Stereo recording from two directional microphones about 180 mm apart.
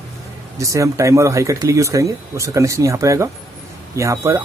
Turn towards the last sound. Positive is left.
turn(degrees=-15)  # may be behind; listen again after turning